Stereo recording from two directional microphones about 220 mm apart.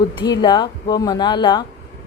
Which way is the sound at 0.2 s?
20° left (ahead or behind).